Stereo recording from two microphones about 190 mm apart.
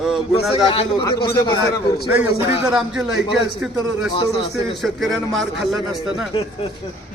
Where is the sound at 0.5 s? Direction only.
30° left (ahead or behind).